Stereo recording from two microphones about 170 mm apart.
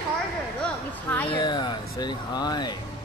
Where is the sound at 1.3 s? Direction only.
25° left (ahead or behind).